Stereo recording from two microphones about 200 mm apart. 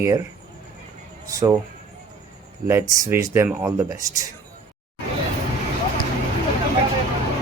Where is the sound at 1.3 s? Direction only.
15° right (ahead or behind).